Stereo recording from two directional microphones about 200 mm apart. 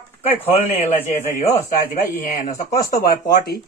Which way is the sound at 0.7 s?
35° left (ahead or behind).